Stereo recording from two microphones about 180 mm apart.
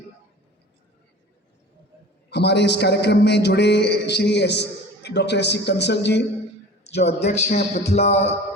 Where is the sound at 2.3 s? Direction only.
70° left (ahead or behind).